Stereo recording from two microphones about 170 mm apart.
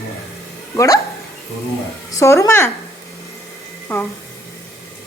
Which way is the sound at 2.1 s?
15° left (ahead or behind).